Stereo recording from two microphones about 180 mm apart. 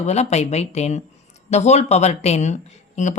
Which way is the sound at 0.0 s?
40° left (ahead or behind).